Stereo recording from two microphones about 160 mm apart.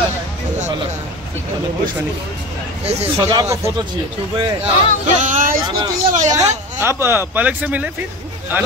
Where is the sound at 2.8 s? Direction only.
40° right (ahead or behind).